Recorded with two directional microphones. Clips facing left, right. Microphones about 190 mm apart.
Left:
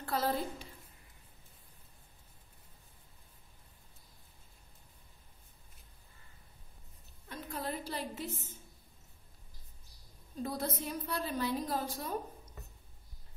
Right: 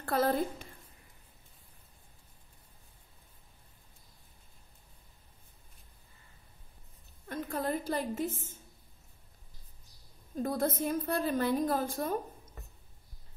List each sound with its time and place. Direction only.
0.0 s a woman's voice: 55° right (ahead or behind)
7.2 s a sound: 50° right (ahead or behind)
10.3 s a woman's voice: 50° right (ahead or behind)